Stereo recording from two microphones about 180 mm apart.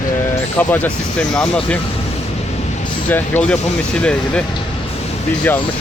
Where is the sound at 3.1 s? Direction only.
10° left (ahead or behind).